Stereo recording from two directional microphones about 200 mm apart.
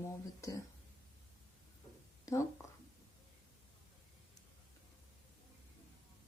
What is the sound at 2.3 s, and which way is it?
Speech, 15° left (ahead or behind).